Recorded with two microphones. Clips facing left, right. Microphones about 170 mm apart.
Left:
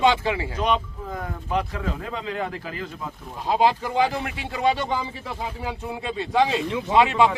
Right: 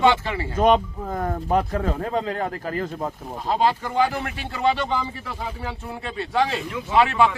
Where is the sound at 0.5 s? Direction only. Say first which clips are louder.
Right 6 dB; 50° right (ahead or behind).